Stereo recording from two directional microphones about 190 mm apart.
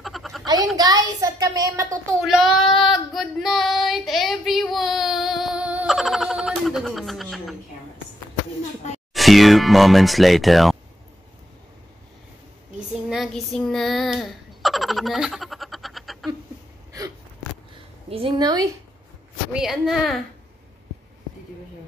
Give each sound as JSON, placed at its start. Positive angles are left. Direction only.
{"t": 0.0, "sound": "a sound", "side_deg": 0}
{"t": 0.7, "sound": "a child's voice", "side_deg": -20}
{"t": 2.2, "sound": "child singing", "side_deg": 0}
{"t": 9.1, "sound": "speech", "side_deg": 0}
{"t": 13.1, "sound": "a sound", "side_deg": 0}
{"t": 18.1, "sound": "a woman's voice", "side_deg": -25}
{"t": 19.5, "sound": "speech", "side_deg": -5}